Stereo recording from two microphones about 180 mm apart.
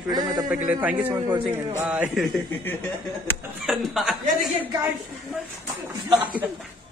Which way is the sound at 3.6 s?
Centre (ahead or behind).